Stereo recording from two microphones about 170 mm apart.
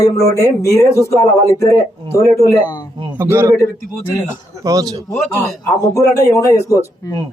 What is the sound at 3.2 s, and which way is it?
Speech, 15° right (ahead or behind).